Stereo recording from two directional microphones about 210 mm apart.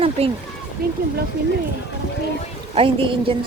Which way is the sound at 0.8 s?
45° right (ahead or behind).